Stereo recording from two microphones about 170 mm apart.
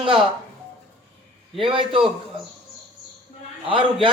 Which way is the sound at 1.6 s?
30° right (ahead or behind).